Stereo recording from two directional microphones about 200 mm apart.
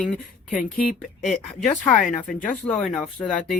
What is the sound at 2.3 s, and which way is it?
Speech, 40° left (ahead or behind).